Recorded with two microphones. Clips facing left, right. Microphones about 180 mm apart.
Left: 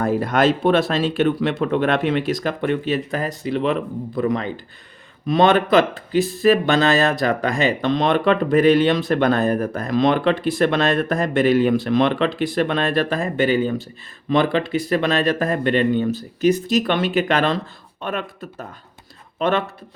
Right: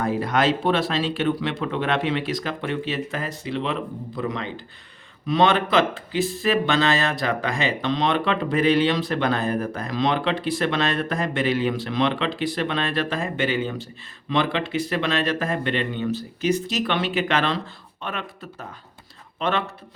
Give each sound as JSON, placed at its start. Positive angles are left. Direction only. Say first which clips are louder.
{"t": 0.0, "sound": "speech", "louder": "left 4 dB", "side_deg": 50}